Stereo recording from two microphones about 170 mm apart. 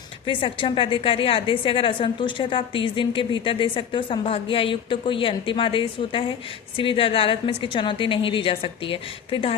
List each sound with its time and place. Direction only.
0.3 s a woman's voice: 30° left (ahead or behind)